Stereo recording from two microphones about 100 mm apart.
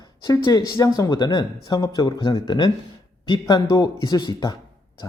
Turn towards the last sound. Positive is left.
turn(degrees=40)  # may be behind; listen again after turning